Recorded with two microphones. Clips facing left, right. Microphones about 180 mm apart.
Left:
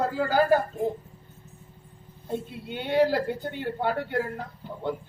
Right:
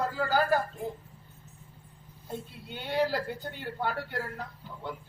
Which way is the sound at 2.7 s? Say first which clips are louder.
Left 6 dB; 55° left (ahead or behind).